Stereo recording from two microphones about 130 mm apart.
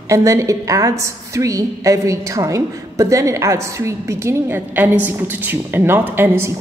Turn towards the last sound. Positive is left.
turn(degrees=-15)  # may be behind; listen again after turning